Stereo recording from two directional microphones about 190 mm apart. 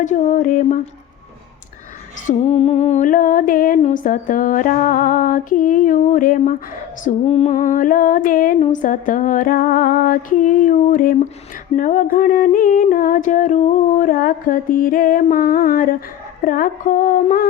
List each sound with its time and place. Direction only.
0.0 s a sound: 40° left (ahead or behind)
2.2 s humming: 35° left (ahead or behind)
7.0 s humming: 35° left (ahead or behind)